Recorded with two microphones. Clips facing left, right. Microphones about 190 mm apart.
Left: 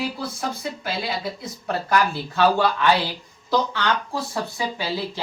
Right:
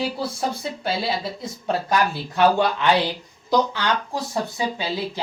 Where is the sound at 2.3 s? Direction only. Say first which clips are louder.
Right 1 dB; 20° right (ahead or behind).